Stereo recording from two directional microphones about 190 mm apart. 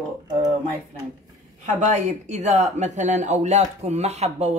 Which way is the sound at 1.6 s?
40° right (ahead or behind).